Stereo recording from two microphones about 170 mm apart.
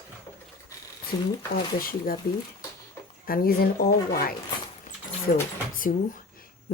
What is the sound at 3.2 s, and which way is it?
Speech, 60° left (ahead or behind).